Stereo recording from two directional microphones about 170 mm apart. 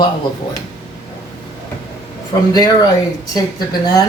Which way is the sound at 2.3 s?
20° left (ahead or behind).